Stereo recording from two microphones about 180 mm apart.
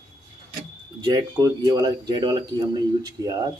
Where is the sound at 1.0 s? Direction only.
20° right (ahead or behind).